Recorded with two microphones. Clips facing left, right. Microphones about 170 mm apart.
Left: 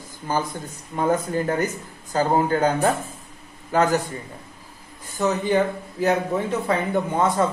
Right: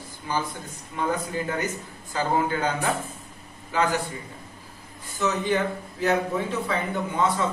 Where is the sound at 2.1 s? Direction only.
45° left (ahead or behind).